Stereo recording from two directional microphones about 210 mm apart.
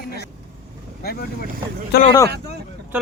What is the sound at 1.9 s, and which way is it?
Speech, 50° left (ahead or behind).